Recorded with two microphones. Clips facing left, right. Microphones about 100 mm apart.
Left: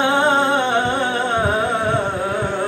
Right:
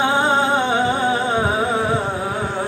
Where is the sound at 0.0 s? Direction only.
5° right (ahead or behind).